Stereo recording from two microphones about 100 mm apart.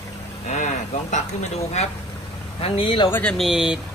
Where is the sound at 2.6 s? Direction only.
60° left (ahead or behind).